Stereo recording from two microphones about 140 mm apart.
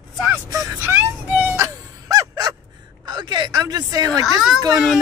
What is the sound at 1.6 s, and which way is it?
Music, 25° right (ahead or behind).